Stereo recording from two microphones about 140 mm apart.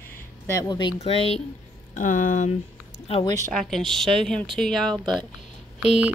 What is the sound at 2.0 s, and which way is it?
Speech, 70° left (ahead or behind).